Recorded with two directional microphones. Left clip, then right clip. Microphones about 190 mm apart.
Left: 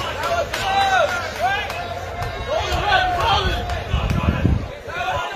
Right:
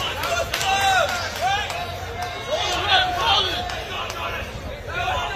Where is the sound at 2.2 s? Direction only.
60° left (ahead or behind).